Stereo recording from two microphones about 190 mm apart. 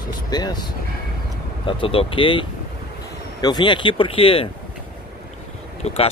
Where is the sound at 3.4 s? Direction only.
25° left (ahead or behind).